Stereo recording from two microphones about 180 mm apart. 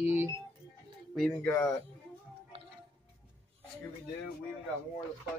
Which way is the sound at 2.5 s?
30° right (ahead or behind).